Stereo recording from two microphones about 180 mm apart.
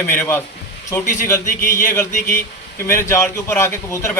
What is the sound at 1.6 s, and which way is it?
Speech, 50° left (ahead or behind).